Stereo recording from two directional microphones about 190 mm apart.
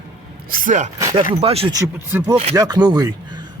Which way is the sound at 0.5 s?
45° right (ahead or behind).